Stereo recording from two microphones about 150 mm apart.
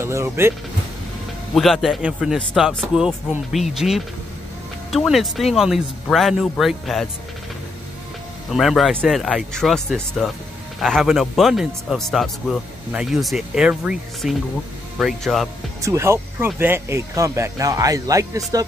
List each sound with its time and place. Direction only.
0.0 s speech: 15° right (ahead or behind)
1.5 s speech: centre (ahead or behind)
8.5 s speech: centre (ahead or behind)
15.8 s speech: 20° right (ahead or behind)